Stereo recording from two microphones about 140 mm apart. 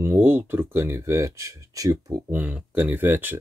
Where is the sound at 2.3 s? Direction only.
10° right (ahead or behind).